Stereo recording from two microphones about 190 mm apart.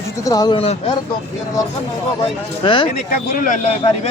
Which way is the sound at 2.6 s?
25° left (ahead or behind).